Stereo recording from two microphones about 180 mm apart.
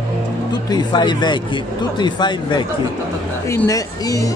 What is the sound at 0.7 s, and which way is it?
Speech, 25° left (ahead or behind).